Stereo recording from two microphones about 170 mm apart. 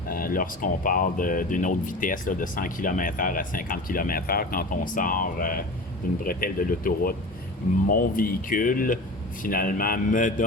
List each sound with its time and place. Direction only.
0.1 s speech: 55° left (ahead or behind)